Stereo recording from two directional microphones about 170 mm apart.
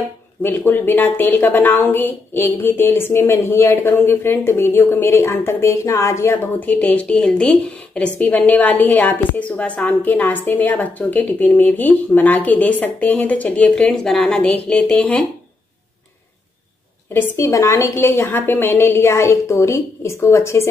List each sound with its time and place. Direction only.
0.4 s speech: 15° left (ahead or behind)
17.1 s speech: 15° left (ahead or behind)